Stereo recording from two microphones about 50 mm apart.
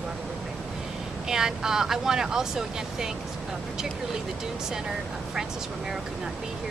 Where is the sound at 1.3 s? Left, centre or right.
Centre.